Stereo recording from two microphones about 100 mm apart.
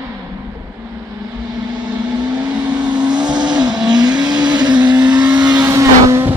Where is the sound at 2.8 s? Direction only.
45° right (ahead or behind).